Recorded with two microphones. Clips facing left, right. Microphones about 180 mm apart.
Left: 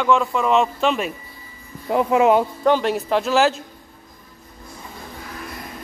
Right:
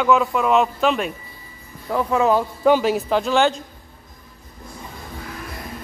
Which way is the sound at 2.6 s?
5° right (ahead or behind).